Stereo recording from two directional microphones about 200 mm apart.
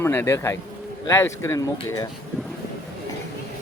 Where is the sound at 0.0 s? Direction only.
10° left (ahead or behind).